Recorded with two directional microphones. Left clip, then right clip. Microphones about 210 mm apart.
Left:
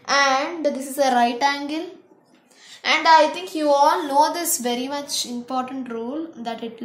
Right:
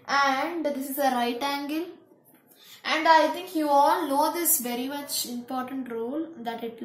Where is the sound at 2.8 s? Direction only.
50° left (ahead or behind).